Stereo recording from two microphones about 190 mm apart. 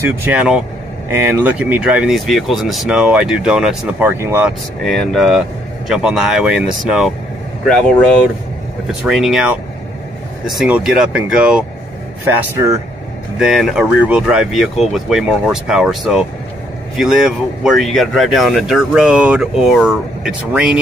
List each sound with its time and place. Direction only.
0.0 s speech: 10° right (ahead or behind)
4.8 s speech: centre (ahead or behind)
12.3 s speech: 15° right (ahead or behind)
13.4 s speech: centre (ahead or behind)